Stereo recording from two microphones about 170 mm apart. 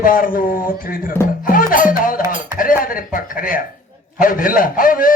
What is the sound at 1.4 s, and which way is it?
A man's voice, 55° left (ahead or behind).